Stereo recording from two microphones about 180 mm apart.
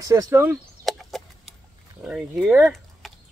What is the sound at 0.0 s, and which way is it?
Speech, 20° right (ahead or behind).